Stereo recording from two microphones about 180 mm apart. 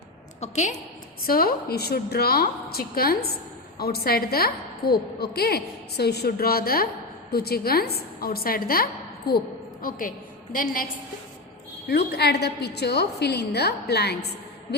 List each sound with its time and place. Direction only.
0.3 s a woman's voice: 40° left (ahead or behind)
1.2 s a woman's voice: 55° left (ahead or behind)
10.5 s a woman's voice: 50° left (ahead or behind)
11.9 s a woman's voice: 65° left (ahead or behind)